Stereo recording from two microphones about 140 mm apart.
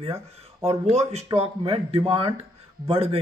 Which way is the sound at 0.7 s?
50° right (ahead or behind).